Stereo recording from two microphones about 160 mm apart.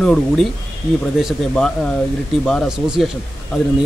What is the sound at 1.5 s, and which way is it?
Speech, 5° left (ahead or behind).